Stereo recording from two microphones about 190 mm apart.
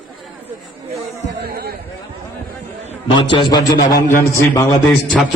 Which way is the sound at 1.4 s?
55° right (ahead or behind).